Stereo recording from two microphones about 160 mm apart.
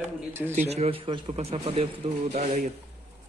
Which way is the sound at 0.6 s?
40° right (ahead or behind).